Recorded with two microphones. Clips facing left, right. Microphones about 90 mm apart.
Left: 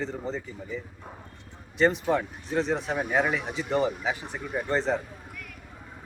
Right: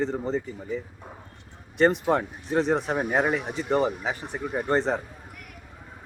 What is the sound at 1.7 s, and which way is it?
Speech, 50° right (ahead or behind).